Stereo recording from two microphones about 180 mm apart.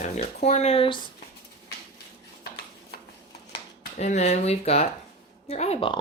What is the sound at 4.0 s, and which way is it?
Speech, 40° left (ahead or behind).